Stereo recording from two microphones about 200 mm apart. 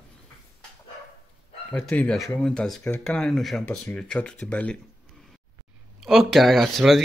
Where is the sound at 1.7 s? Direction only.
5° left (ahead or behind).